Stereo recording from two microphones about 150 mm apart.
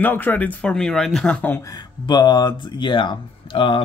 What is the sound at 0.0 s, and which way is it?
Speech, 10° left (ahead or behind).